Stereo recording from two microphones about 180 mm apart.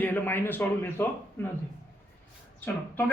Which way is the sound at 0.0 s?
10° left (ahead or behind).